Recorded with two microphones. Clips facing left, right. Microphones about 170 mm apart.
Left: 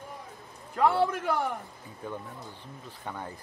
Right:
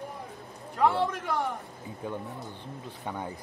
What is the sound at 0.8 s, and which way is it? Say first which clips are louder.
Speech: left 1 dB; 5° left (ahead or behind).